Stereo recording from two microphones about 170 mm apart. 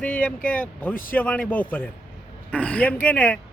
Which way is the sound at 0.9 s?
55° left (ahead or behind).